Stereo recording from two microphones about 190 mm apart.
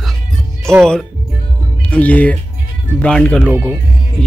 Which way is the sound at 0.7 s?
5° left (ahead or behind).